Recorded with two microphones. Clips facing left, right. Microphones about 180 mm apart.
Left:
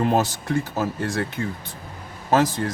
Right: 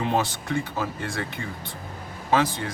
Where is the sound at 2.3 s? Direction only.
45° left (ahead or behind).